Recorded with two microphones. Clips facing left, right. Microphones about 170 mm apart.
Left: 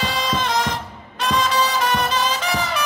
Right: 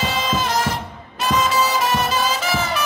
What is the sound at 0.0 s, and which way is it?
Music, 5° right (ahead or behind).